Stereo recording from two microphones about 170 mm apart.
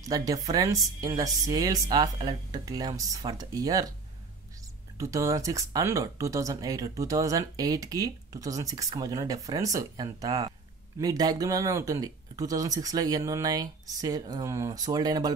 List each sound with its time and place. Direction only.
0.0 s speech: 20° right (ahead or behind)
4.9 s speech: 20° right (ahead or behind)